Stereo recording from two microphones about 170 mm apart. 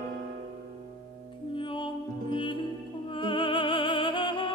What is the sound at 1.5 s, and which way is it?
Music, 30° left (ahead or behind).